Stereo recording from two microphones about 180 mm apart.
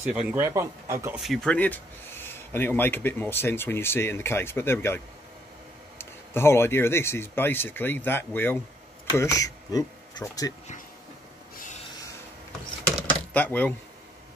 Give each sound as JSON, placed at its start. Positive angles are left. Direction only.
{"t": 0.1, "sound": "speech", "side_deg": -5}
{"t": 1.1, "sound": "speech", "side_deg": 0}
{"t": 13.3, "sound": "speech", "side_deg": 10}